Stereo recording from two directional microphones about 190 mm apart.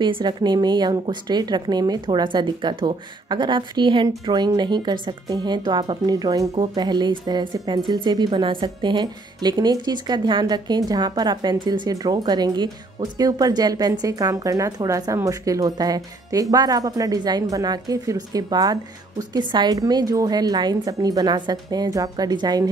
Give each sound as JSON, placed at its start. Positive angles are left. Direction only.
{"t": 0.0, "sound": "speech", "side_deg": -25}